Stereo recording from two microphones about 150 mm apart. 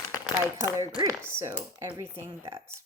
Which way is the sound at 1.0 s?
15° right (ahead or behind).